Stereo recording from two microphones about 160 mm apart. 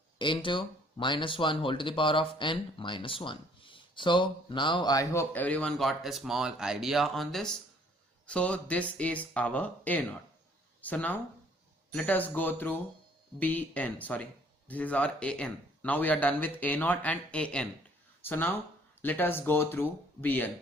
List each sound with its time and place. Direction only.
0.2 s speech: 30° left (ahead or behind)
5.3 s a man's voice: 10° left (ahead or behind)